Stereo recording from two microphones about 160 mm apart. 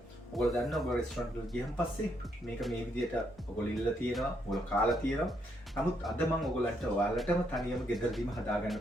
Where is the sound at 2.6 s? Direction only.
Centre (ahead or behind).